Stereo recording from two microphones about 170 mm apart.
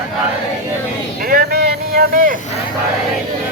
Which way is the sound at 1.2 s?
60° right (ahead or behind).